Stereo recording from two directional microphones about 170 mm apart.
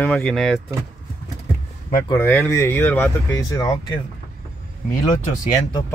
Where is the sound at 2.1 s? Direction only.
15° left (ahead or behind).